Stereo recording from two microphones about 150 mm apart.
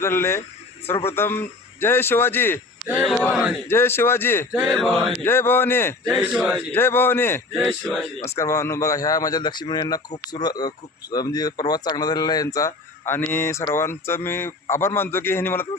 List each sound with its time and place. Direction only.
0.0 s speech: 15° left (ahead or behind)
3.7 s speech: 15° left (ahead or behind)
4.5 s a sound: 10° right (ahead or behind)
4.8 s a man's voice: centre (ahead or behind)
5.2 s speech: 15° left (ahead or behind)
6.1 s a man's voice: centre (ahead or behind)
6.7 s speech: 15° left (ahead or behind)
7.5 s a man's voice: centre (ahead or behind)
8.4 s speech: 20° left (ahead or behind)